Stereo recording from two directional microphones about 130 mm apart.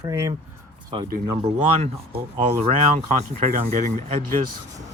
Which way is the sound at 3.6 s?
80° right.